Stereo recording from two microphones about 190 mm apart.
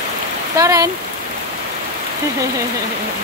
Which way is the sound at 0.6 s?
15° right (ahead or behind).